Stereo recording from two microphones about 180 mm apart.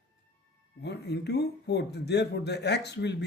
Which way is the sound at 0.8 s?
65° left (ahead or behind).